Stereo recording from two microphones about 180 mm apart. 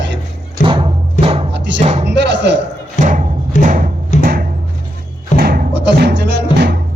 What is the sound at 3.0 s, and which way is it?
Thump, 45° right (ahead or behind).